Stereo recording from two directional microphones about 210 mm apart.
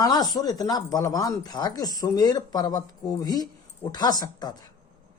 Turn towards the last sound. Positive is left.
turn(degrees=20)  # may be behind; listen again after turning